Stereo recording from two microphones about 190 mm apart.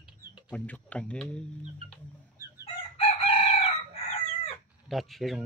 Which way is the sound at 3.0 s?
30° left (ahead or behind).